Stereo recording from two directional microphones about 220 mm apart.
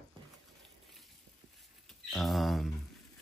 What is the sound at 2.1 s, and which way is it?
Speech, centre (ahead or behind).